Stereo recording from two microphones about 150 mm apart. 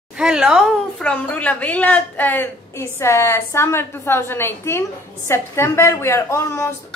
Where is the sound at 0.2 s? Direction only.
5° right (ahead or behind).